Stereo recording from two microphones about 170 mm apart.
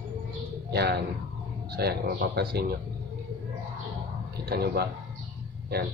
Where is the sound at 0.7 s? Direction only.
75° right (ahead or behind).